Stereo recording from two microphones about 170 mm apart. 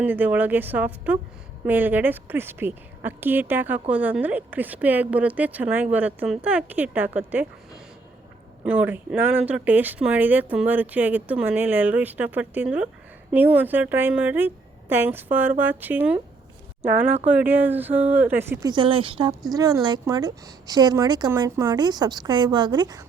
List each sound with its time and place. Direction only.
0.0 s a woman's voice: 10° right (ahead or behind)
8.6 s a woman's voice: 10° right (ahead or behind)
18.7 s a woman's voice: 30° right (ahead or behind)